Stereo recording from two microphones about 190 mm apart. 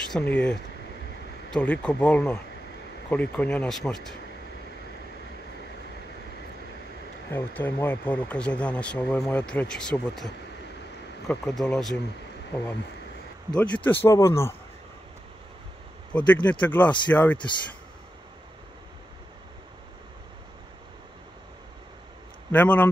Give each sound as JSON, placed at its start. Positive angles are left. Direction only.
{"t": 0.1, "sound": "speech", "side_deg": 5}
{"t": 7.2, "sound": "speech", "side_deg": 10}
{"t": 16.1, "sound": "speech", "side_deg": 5}
{"t": 22.5, "sound": "speech", "side_deg": 10}